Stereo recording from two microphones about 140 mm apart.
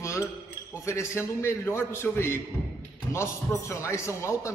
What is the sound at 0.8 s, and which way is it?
A man's voice, 20° left (ahead or behind).